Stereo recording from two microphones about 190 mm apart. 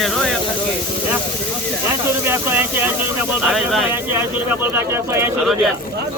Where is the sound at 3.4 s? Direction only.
Centre (ahead or behind).